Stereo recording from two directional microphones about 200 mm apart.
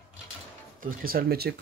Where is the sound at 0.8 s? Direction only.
45° right (ahead or behind).